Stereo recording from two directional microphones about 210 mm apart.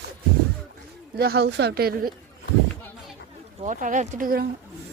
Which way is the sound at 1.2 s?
50° right (ahead or behind).